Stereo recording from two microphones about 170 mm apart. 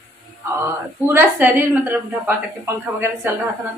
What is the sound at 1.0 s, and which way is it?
A woman's voice, 10° right (ahead or behind).